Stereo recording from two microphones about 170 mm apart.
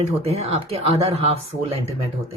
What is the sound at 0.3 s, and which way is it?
A woman's voice, 35° right (ahead or behind).